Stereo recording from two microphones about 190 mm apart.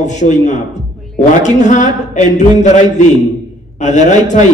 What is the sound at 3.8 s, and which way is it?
Speech, 40° left (ahead or behind).